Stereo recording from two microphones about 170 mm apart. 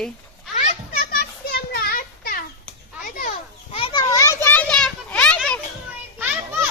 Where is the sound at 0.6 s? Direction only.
55° left (ahead or behind).